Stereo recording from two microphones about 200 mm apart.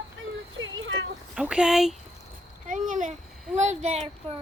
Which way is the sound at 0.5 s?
75° right (ahead or behind).